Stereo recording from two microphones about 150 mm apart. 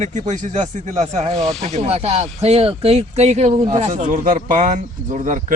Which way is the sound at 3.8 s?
55° right (ahead or behind).